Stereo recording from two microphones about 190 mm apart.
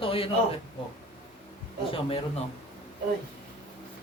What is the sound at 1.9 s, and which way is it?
Speech, 30° left (ahead or behind).